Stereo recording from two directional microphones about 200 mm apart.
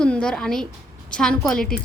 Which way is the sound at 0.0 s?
5° left (ahead or behind).